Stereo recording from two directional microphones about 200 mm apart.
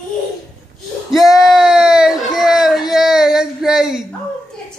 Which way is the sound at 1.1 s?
Centre (ahead or behind).